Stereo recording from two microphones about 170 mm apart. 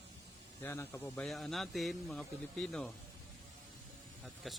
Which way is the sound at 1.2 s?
Centre (ahead or behind).